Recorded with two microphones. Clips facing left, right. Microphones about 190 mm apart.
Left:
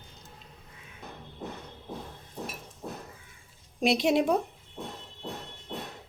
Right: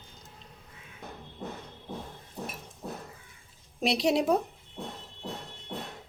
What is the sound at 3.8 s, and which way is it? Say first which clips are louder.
Speech: left 2 dB; centre (ahead or behind).